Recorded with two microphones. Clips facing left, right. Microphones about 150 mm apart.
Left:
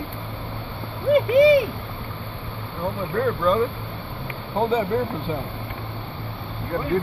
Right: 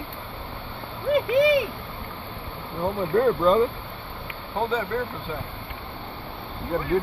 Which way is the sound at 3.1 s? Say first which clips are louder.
Right 2 dB; 20° right (ahead or behind).